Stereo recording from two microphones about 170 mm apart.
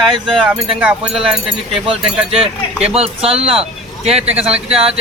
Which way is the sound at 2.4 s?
35° right (ahead or behind).